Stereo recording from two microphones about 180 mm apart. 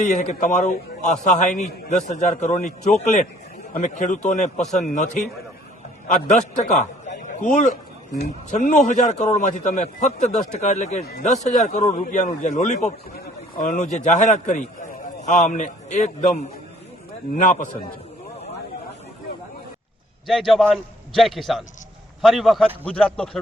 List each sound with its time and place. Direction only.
0.0 s a man's voice: 40° left (ahead or behind)
4.6 s speech: centre (ahead or behind)
4.9 s a man's voice: 45° left (ahead or behind)
17.3 s a man's voice: 45° left (ahead or behind)
20.2 s speech: centre (ahead or behind)